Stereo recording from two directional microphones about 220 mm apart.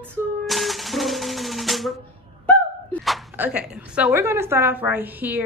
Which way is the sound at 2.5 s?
5° left (ahead or behind).